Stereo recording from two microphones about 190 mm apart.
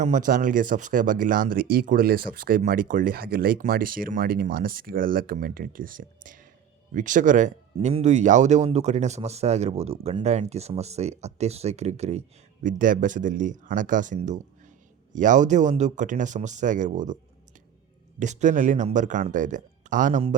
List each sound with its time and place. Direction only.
0.0 s speech: 40° right (ahead or behind)
18.2 s speech: 40° right (ahead or behind)